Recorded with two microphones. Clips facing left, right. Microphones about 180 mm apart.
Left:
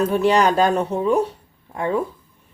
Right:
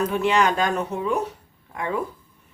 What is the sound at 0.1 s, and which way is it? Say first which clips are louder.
Speech: left 4 dB; 35° left (ahead or behind).